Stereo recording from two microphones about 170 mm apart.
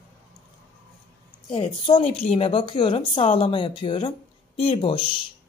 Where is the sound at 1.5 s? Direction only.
30° left (ahead or behind).